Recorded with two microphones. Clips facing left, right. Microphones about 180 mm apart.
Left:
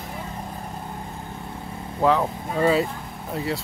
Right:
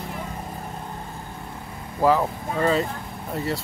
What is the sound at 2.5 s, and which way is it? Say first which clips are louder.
Speech: left 2 dB; 10° left (ahead or behind).